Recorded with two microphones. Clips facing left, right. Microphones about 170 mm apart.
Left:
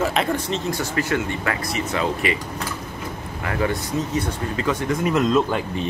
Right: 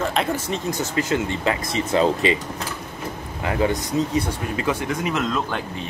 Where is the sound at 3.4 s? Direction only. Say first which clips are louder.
Right 2 dB; 20° right (ahead or behind).